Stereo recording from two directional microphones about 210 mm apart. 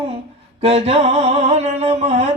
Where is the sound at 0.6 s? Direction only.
30° right (ahead or behind).